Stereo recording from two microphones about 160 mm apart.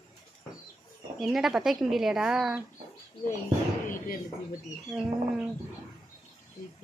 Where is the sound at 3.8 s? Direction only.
60° left (ahead or behind).